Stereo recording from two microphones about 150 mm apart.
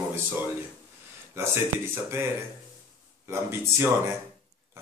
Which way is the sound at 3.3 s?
15° right (ahead or behind).